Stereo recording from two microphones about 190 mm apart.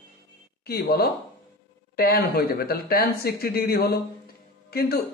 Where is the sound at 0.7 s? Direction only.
55° left (ahead or behind).